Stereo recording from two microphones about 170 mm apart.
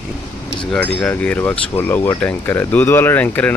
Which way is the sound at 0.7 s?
5° left (ahead or behind).